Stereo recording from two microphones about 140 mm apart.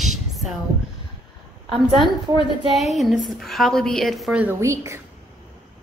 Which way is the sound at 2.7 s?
Centre (ahead or behind).